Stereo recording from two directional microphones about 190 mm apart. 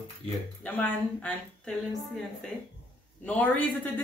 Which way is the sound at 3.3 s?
10° left (ahead or behind).